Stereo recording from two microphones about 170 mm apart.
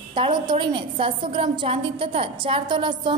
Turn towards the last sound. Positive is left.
turn(degrees=-25)  # may be behind; listen again after turning